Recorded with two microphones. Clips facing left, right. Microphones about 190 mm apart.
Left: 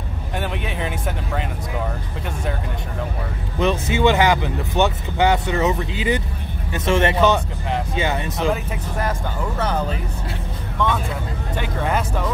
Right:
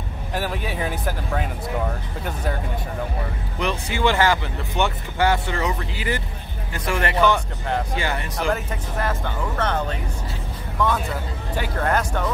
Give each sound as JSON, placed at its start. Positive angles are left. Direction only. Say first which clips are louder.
{"t": 0.3, "sound": "vehicle", "louder": "even", "side_deg": -5}
{"t": 0.7, "sound": "speech", "louder": "even", "side_deg": 0}
{"t": 3.5, "sound": "speech", "louder": "left 6 dB", "side_deg": 20}
{"t": 9.6, "sound": "speech", "louder": "left 1 dB", "side_deg": 5}
{"t": 11.5, "sound": "speech", "louder": "right 1 dB", "side_deg": 0}